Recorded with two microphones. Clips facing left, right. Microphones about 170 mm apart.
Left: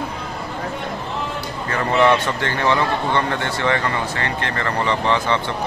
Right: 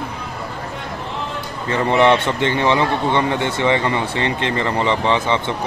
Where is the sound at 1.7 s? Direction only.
20° right (ahead or behind).